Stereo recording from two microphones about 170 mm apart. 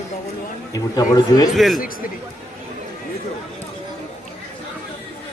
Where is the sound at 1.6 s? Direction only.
Centre (ahead or behind).